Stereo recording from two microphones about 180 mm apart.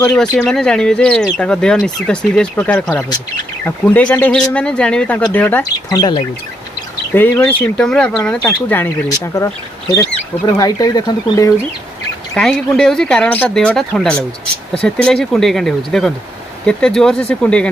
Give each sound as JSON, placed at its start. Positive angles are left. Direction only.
{"t": 0.0, "sound": "speech", "side_deg": 5}
{"t": 5.9, "sound": "speech", "side_deg": 25}
{"t": 7.2, "sound": "speech", "side_deg": 10}
{"t": 12.4, "sound": "speech", "side_deg": 5}